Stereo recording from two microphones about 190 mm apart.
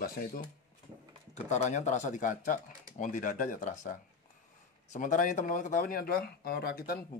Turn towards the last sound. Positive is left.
turn(degrees=50)  # may be behind; listen again after turning